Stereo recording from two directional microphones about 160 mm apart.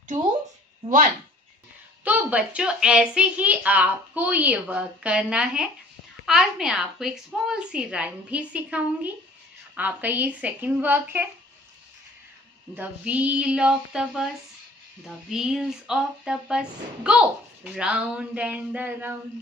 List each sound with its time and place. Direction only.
0.8 s speech: 55° right (ahead or behind)
2.0 s a woman's voice: 10° right (ahead or behind)
12.7 s a woman's voice: 10° right (ahead or behind)